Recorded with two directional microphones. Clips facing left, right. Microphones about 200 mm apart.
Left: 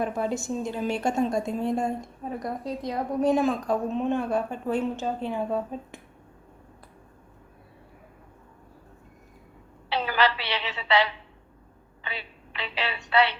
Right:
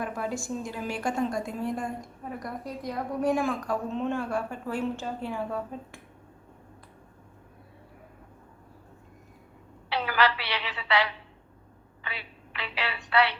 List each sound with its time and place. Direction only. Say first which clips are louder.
0.0 s a woman's voice: left 4 dB; 25° left (ahead or behind)
9.9 s a sound: left 1 dB; 25° left (ahead or behind)
12.0 s a woman's voice: left 3 dB; 25° left (ahead or behind)